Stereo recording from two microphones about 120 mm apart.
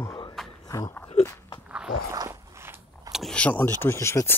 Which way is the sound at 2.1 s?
25° right (ahead or behind).